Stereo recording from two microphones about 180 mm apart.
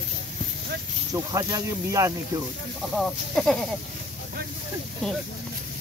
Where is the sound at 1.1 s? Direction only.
20° right (ahead or behind).